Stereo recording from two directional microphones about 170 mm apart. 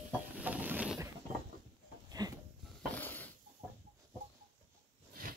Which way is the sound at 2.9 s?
10° left (ahead or behind).